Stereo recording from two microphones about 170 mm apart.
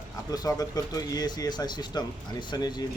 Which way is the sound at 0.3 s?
20° left (ahead or behind).